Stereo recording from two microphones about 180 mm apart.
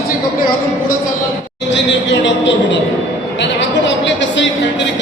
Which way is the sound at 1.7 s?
80° left.